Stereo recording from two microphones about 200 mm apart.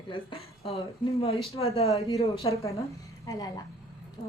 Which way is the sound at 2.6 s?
15° left (ahead or behind).